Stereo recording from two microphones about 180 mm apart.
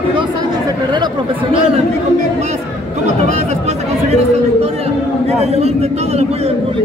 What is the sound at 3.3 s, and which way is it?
Chatter, 40° right (ahead or behind).